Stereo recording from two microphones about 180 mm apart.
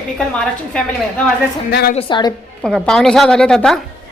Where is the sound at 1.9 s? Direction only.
30° left (ahead or behind).